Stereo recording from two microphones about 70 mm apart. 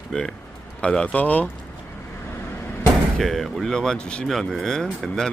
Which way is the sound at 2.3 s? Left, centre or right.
Left.